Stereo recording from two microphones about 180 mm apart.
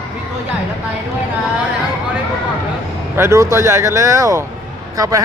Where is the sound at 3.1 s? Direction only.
15° right (ahead or behind).